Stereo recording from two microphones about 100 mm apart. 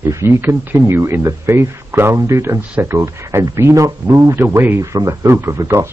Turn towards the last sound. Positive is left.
turn(degrees=-30)  # may be behind; listen again after turning